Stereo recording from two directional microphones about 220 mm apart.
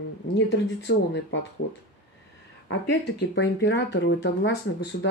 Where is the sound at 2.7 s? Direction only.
55° left (ahead or behind).